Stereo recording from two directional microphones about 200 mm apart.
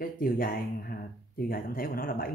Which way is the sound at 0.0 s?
45° left (ahead or behind).